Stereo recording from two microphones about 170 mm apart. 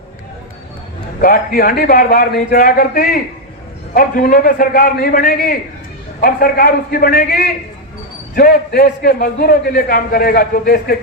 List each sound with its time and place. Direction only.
1.2 s a man's voice: 60° left (ahead or behind)